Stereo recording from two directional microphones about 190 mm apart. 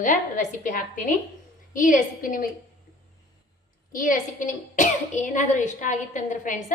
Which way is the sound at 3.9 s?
45° left (ahead or behind).